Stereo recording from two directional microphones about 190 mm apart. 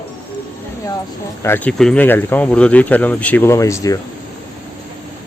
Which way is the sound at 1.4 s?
10° left (ahead or behind).